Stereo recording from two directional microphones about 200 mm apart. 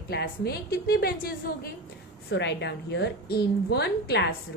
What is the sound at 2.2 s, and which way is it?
A woman's voice, 60° left (ahead or behind).